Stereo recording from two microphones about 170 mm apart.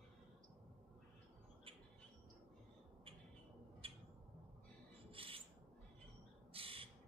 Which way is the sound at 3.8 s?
35° right (ahead or behind).